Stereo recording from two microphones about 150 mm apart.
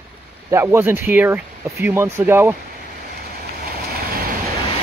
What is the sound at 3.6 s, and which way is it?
Vehicle, 85° right.